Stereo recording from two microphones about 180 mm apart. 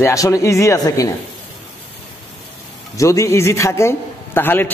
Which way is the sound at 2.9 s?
15° left (ahead or behind).